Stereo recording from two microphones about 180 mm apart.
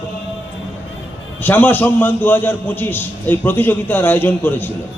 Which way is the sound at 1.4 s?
10° left (ahead or behind).